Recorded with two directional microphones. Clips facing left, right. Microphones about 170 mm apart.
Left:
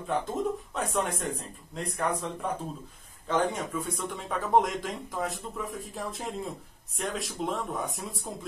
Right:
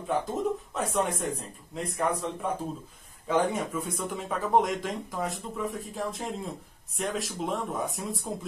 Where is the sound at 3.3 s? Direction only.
5° right (ahead or behind).